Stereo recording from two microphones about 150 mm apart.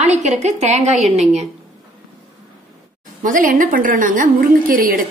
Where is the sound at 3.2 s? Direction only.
60° right (ahead or behind).